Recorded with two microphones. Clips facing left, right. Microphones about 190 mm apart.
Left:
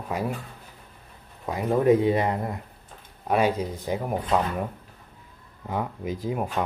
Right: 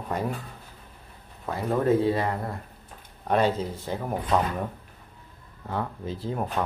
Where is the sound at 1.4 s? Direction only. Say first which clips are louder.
Left 3 dB; 15° left (ahead or behind).